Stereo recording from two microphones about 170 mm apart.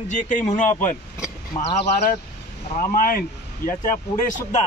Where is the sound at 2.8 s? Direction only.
55° left (ahead or behind).